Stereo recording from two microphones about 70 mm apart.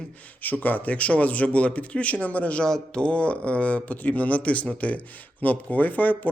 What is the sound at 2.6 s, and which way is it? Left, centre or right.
Speech, centre.